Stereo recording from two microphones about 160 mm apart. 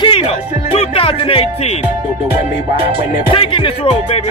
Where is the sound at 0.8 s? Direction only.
35° left (ahead or behind).